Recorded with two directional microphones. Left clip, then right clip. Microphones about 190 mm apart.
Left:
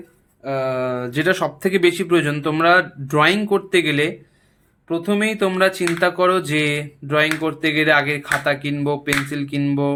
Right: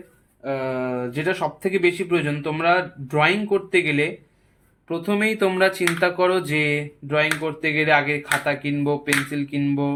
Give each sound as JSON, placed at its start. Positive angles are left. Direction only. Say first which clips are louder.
{"t": 0.4, "sound": "speech", "louder": "left 4 dB", "side_deg": 15}
{"t": 4.9, "sound": "speech", "louder": "left 2 dB", "side_deg": 10}